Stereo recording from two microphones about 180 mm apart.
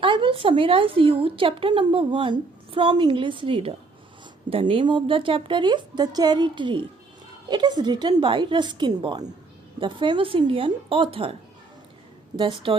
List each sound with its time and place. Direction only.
0.0 s a woman's voice: 30° right (ahead or behind)
12.4 s a woman's voice: 25° right (ahead or behind)